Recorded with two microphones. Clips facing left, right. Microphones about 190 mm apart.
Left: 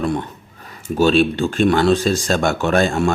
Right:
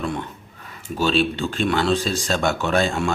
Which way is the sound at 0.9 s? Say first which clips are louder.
Left 6 dB; 50° left (ahead or behind).